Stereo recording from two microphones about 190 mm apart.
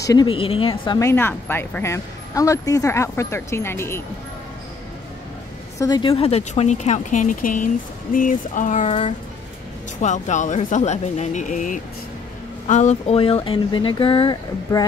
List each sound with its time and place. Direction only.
0.0 s speech: 20° left (ahead or behind)
0.9 s a woman's voice: 15° left (ahead or behind)
5.8 s speech: 20° left (ahead or behind)